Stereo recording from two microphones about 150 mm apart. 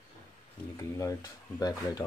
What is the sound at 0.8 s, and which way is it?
Speech, 20° left (ahead or behind).